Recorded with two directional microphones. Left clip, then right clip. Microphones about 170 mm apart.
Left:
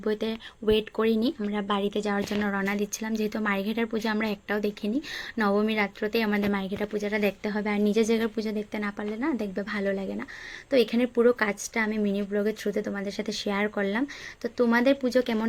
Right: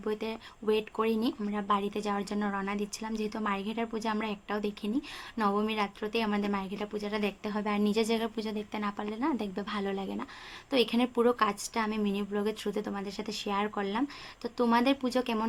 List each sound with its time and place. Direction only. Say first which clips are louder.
0.0 s a woman's voice: left 5 dB; 25° left (ahead or behind)